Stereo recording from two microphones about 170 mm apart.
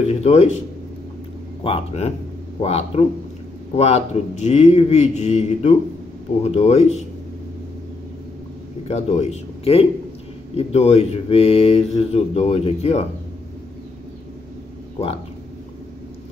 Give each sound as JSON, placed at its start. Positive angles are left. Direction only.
{"t": 0.0, "sound": "speech", "side_deg": 40}
{"t": 1.6, "sound": "speech", "side_deg": 35}
{"t": 8.8, "sound": "a man's voice", "side_deg": 40}